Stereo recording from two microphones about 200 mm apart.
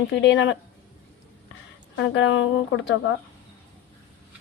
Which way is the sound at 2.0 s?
65° left (ahead or behind).